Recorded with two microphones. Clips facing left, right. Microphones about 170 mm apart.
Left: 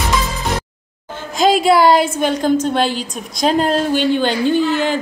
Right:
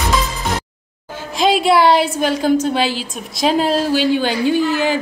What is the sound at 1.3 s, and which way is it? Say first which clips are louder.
A woman's voice: left 1 dB; centre (ahead or behind).